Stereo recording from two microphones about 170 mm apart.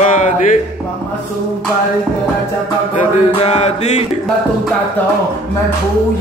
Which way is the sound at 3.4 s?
40° left (ahead or behind).